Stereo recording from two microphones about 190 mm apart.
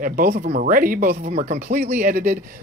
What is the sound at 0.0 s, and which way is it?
Speech, 45° right (ahead or behind).